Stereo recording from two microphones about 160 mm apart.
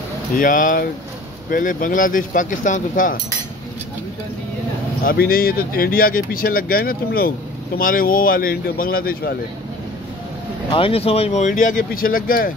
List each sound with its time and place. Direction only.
0.4 s speech: 55° left (ahead or behind)
5.0 s speech: 70° left (ahead or behind)
10.7 s speech: 35° left (ahead or behind); by 12.5 s 60° left (ahead or behind)